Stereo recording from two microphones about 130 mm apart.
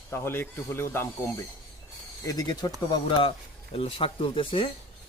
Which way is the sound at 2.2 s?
30° left (ahead or behind).